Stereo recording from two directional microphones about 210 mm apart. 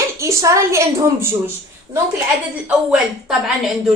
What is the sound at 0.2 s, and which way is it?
A woman's voice, 15° right (ahead or behind).